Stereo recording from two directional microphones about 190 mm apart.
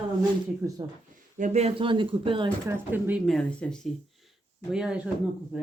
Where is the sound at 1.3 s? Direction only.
40° right (ahead or behind).